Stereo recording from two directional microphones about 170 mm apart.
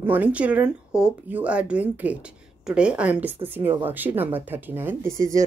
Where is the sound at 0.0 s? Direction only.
10° right (ahead or behind).